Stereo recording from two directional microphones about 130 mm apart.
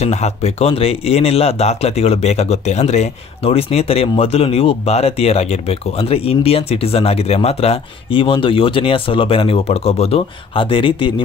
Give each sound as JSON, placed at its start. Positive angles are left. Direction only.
{"t": 0.0, "sound": "speech", "side_deg": 60}